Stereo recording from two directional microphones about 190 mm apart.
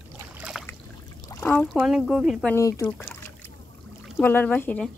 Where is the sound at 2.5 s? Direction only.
15° left (ahead or behind).